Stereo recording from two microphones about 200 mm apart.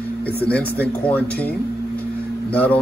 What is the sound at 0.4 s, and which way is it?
Speech, 5° left (ahead or behind).